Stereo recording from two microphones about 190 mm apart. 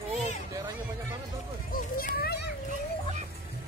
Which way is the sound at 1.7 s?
50° left (ahead or behind).